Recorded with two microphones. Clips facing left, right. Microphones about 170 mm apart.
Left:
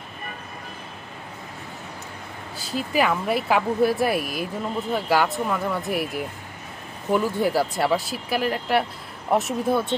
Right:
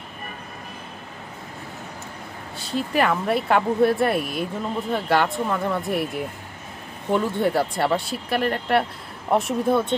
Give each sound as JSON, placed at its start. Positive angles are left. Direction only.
{"t": 2.6, "sound": "speech", "side_deg": 0}